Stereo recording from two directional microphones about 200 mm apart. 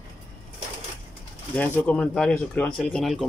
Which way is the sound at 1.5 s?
5° left (ahead or behind).